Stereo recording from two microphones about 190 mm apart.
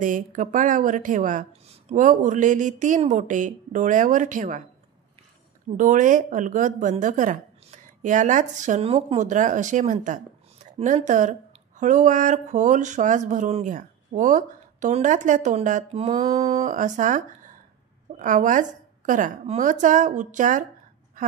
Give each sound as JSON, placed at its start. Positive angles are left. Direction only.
{"t": 0.0, "sound": "speech", "side_deg": -45}
{"t": 5.8, "sound": "speech", "side_deg": -45}
{"t": 16.4, "sound": "speech", "side_deg": -45}